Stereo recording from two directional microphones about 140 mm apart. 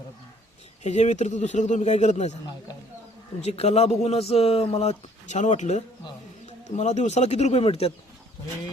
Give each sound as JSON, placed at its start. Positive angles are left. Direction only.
{"t": 0.8, "sound": "a man's voice", "side_deg": 55}
{"t": 3.4, "sound": "speech", "side_deg": 45}